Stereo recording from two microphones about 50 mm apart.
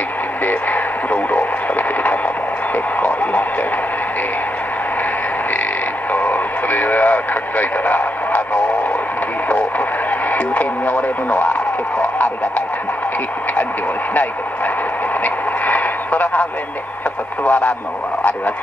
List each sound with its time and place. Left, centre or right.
0.5 s radio: left
6.1 s radio: left
10.3 s radio: left
15.2 s a sound: left
17.5 s speech: left